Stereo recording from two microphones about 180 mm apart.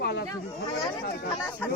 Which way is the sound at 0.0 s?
65° left (ahead or behind).